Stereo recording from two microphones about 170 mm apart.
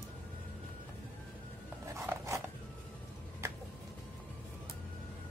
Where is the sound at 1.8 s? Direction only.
15° right (ahead or behind).